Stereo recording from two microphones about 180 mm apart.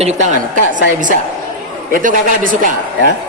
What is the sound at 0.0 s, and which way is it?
Speech, 40° right (ahead or behind).